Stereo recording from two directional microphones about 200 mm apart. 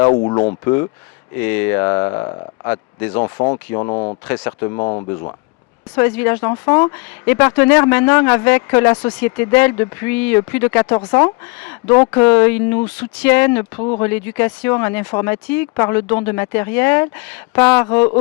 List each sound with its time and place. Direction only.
0.3 s speech: 20° left (ahead or behind)
4.3 s speech: 15° left (ahead or behind)
6.0 s speech: 10° left (ahead or behind)
13.7 s speech: 30° left (ahead or behind)
14.0 s speech: 10° left (ahead or behind)